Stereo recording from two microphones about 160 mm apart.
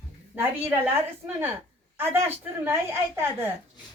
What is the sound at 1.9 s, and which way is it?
A man's voice, 15° right (ahead or behind).